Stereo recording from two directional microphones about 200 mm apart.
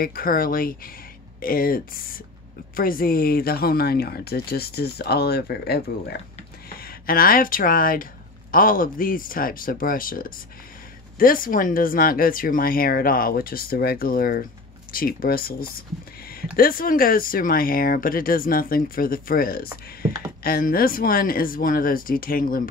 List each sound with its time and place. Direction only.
0.0 s speech: 45° left (ahead or behind)